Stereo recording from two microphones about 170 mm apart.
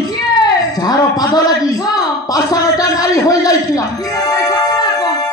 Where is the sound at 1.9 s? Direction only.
20° left (ahead or behind).